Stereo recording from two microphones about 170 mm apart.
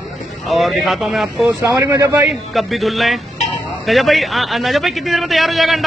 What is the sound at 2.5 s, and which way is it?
Speech, centre (ahead or behind).